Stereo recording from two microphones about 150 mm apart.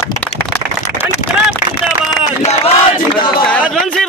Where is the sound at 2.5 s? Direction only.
40° left (ahead or behind).